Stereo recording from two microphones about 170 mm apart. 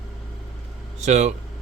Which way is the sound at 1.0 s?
45° right (ahead or behind).